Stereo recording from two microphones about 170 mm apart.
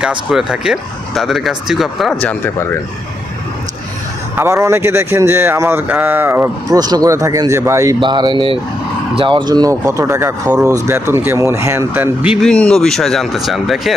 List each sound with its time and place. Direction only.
0.0 s speech: 5° right (ahead or behind)
2.2 s speech: 10° left (ahead or behind)
4.4 s speech: 15° right (ahead or behind)
12.5 s speech: 5° left (ahead or behind)